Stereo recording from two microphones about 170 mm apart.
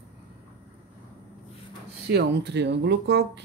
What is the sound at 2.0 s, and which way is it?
Speech, 85° right.